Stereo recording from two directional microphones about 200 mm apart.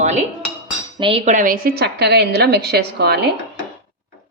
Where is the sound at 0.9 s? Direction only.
25° right (ahead or behind); by 3.2 s 55° right (ahead or behind).